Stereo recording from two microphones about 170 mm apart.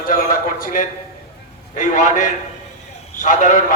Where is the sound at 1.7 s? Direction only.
50° left (ahead or behind).